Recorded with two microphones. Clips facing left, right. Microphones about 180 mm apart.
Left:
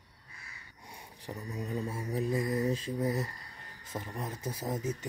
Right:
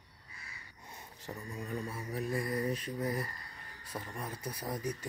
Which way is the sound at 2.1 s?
25° left (ahead or behind).